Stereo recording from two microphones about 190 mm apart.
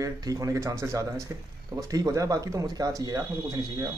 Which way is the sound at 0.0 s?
20° right (ahead or behind).